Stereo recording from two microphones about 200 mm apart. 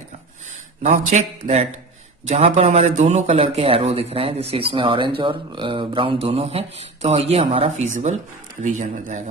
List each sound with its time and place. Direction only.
1.1 s speech: 35° right (ahead or behind)